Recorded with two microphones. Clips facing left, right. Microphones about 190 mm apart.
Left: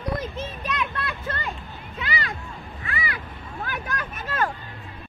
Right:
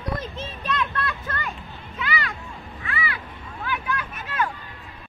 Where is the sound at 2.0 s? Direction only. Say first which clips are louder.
Right 1 dB; 35° left (ahead or behind).